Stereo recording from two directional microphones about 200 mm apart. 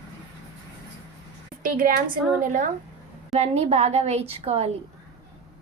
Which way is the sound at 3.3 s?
30° right (ahead or behind).